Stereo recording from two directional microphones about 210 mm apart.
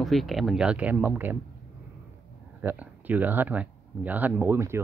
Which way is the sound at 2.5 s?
10° right (ahead or behind).